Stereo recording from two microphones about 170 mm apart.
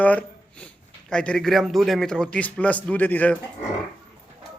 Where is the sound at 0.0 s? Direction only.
10° left (ahead or behind).